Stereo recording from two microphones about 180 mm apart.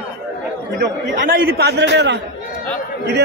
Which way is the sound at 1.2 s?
55° right (ahead or behind).